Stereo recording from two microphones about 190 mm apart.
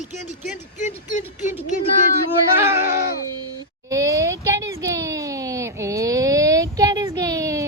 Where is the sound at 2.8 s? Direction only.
55° left (ahead or behind).